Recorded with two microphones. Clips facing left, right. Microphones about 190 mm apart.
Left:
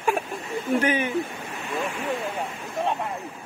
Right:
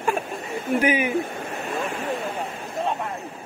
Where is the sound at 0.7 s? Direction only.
10° right (ahead or behind).